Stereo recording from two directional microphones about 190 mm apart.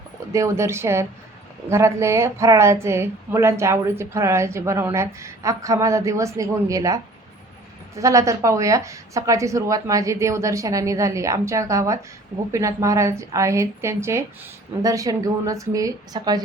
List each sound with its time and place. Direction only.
0.3 s a woman's voice: 15° right (ahead or behind)